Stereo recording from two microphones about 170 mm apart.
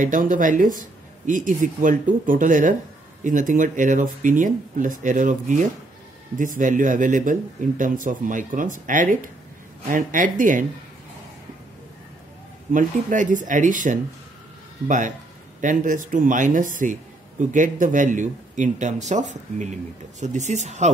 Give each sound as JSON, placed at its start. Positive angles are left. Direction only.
{"t": 0.0, "sound": "a man's voice", "side_deg": -50}
{"t": 12.7, "sound": "a man's voice", "side_deg": -50}